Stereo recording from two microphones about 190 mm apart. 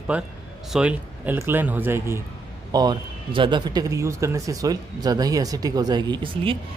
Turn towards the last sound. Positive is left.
turn(degrees=-25)  # may be behind; listen again after turning